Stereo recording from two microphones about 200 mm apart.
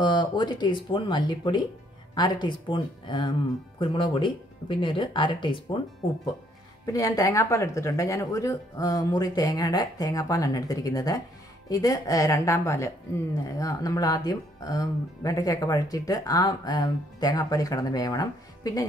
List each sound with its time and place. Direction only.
0.0 s speech: 20° left (ahead or behind)
6.9 s a woman's voice: 15° left (ahead or behind)